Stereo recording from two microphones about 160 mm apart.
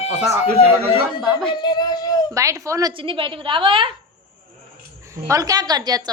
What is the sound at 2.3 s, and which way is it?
Speech, 20° right (ahead or behind).